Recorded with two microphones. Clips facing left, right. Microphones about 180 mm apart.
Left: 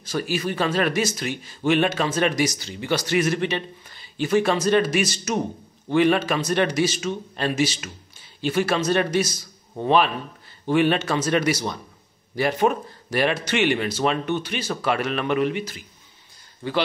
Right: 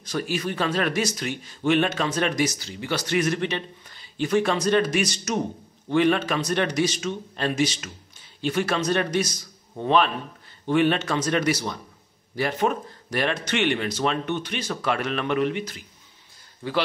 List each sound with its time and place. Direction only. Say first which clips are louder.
0.0 s speech: left 2 dB; 5° left (ahead or behind)
2.6 s speech: left 3 dB; 20° left (ahead or behind)
3.1 s a man's voice: left 1 dB; 5° left (ahead or behind)